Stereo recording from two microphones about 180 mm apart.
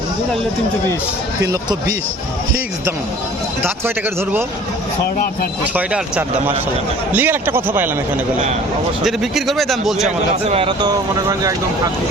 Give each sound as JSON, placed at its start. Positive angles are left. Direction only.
{"t": 1.4, "sound": "speech", "side_deg": -20}
{"t": 3.6, "sound": "speech", "side_deg": -10}
{"t": 5.7, "sound": "speech", "side_deg": -10}
{"t": 9.0, "sound": "a man's voice", "side_deg": 0}
{"t": 10.4, "sound": "speech", "side_deg": -35}